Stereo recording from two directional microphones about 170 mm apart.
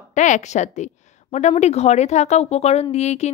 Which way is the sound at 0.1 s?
45° left (ahead or behind).